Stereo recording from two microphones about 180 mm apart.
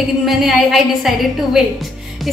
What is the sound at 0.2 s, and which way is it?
A woman's voice, centre (ahead or behind).